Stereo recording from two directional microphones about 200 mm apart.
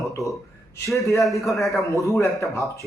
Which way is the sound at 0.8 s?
15° left (ahead or behind).